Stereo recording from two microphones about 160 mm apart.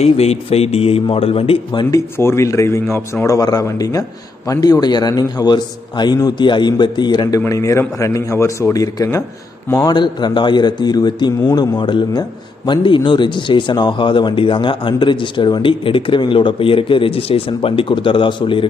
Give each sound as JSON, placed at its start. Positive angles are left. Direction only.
{"t": 0.0, "sound": "speech", "side_deg": 40}
{"t": 2.1, "sound": "a man's voice", "side_deg": 15}